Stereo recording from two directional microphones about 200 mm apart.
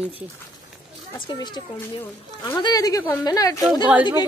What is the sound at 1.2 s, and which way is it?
Speech, 20° left (ahead or behind).